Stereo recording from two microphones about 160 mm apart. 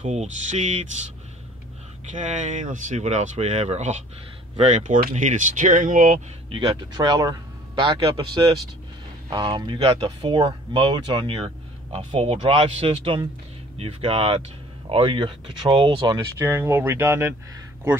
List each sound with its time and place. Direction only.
0.0 s speech: 45° right (ahead or behind)
2.1 s speech: 50° right (ahead or behind)
6.5 s a man's voice: 30° right (ahead or behind)
16.3 s speech: 15° right (ahead or behind)